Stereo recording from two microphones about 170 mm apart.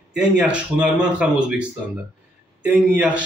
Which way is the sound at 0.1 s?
5° right (ahead or behind).